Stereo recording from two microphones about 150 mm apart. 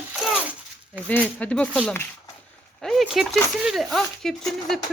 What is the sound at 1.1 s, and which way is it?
Speech, 10° left (ahead or behind).